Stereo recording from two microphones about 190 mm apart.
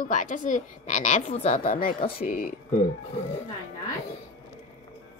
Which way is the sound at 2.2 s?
50° left (ahead or behind).